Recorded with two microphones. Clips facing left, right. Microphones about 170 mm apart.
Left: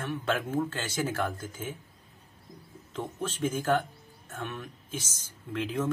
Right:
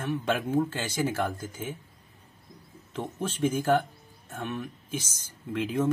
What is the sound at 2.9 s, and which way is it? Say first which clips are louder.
Speech: right 2 dB; 5° right (ahead or behind).